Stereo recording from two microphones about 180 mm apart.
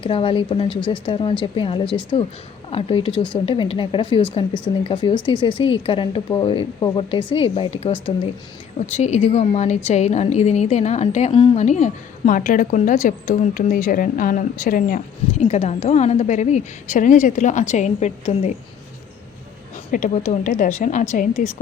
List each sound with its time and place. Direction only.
0.0 s a woman's voice: 30° left (ahead or behind)
19.9 s a woman's voice: 45° left (ahead or behind)